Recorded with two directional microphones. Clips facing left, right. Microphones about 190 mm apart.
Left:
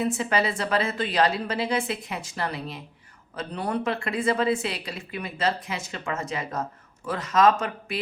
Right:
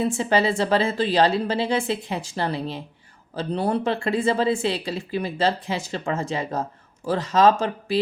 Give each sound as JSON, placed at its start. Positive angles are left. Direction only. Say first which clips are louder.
{"t": 0.0, "sound": "speech", "louder": "right 4 dB", "side_deg": -30}